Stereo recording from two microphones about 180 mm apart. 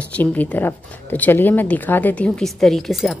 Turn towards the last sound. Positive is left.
turn(degrees=0)  # may be behind; listen again after turning